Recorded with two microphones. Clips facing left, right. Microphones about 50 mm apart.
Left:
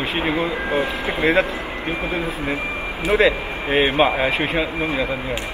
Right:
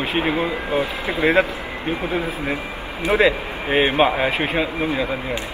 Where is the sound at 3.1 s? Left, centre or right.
Centre.